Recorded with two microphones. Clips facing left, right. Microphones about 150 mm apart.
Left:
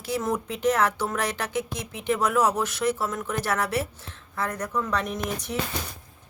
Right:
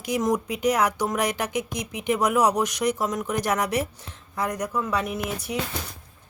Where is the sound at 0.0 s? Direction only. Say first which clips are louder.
Right 3 dB; 15° right (ahead or behind).